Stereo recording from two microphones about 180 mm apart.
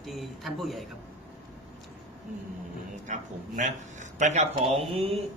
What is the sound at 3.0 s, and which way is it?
Speech, 45° right (ahead or behind).